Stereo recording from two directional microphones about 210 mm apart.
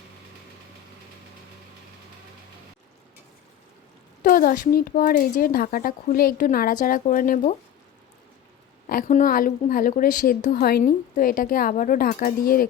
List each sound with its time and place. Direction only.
4.2 s speech: 40° left (ahead or behind)
8.9 s a woman's voice: 40° left (ahead or behind)